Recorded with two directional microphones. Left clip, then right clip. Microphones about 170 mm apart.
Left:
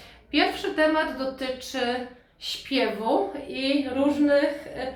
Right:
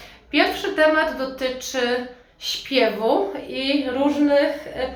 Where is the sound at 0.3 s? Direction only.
15° right (ahead or behind).